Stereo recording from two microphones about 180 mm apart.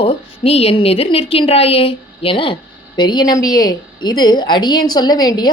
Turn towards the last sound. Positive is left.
turn(degrees=25)  # may be behind; listen again after turning